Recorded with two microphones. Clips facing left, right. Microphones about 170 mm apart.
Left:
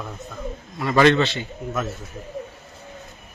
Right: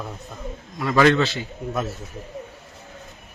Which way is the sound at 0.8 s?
Centre (ahead or behind).